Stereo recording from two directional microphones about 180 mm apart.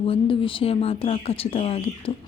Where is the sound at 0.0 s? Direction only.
30° left (ahead or behind).